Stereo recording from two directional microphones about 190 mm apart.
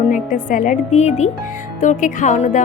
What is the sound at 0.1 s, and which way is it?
A woman's voice, 45° left (ahead or behind).